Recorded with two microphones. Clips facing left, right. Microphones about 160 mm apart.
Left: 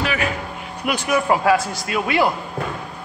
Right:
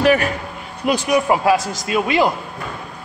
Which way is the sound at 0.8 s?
20° right (ahead or behind).